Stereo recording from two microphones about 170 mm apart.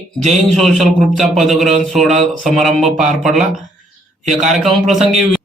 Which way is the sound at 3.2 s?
Centre (ahead or behind).